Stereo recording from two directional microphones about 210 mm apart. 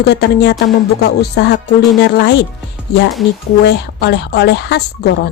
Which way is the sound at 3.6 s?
55° left (ahead or behind).